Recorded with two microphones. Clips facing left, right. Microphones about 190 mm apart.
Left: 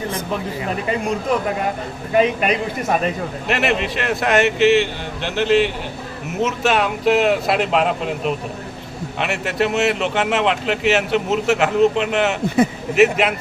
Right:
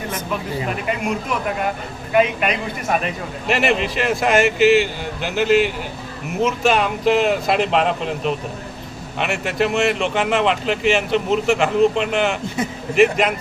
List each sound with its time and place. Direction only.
2.1 s speech: 35° left (ahead or behind)
3.4 s speech: centre (ahead or behind)